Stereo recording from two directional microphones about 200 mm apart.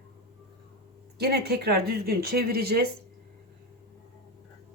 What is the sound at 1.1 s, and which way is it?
Speech, 55° right (ahead or behind).